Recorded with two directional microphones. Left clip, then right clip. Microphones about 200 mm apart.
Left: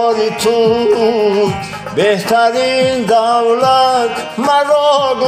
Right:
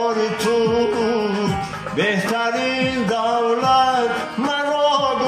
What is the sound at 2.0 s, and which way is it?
Music, 45° left (ahead or behind).